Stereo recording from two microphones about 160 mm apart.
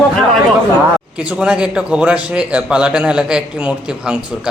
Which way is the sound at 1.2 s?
5° right (ahead or behind).